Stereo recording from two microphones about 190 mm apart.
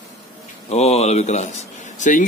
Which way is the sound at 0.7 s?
35° left (ahead or behind).